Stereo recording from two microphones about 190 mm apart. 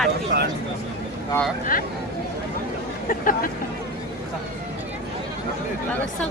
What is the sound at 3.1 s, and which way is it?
Speech, 45° left (ahead or behind).